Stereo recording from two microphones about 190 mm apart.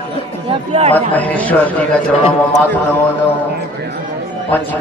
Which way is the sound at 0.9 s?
10° left (ahead or behind).